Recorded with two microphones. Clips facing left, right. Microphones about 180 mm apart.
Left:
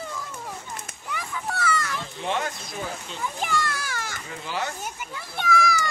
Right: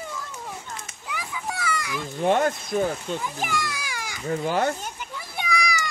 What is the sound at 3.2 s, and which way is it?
Speech, 10° right (ahead or behind).